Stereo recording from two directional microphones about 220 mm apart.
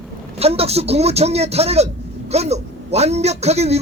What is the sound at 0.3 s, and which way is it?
A man's voice, 25° right (ahead or behind).